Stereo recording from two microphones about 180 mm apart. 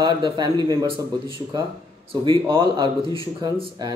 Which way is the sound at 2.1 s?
25° right (ahead or behind).